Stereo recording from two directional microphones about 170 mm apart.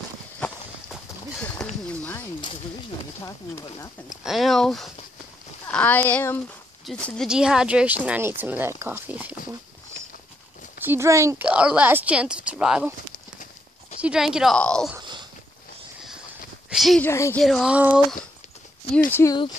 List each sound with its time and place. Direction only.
1.9 s speech: 10° left (ahead or behind)
4.2 s speech: centre (ahead or behind)
10.8 s speech: 15° right (ahead or behind)
14.0 s speech: 5° right (ahead or behind)
16.7 s speech: centre (ahead or behind)
17.0 s speech: 15° left (ahead or behind)
17.4 s speech: centre (ahead or behind)
19.2 s speech: 15° left (ahead or behind)